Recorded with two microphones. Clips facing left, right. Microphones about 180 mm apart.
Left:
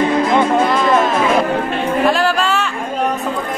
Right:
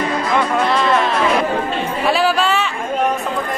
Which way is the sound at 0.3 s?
25° left (ahead or behind).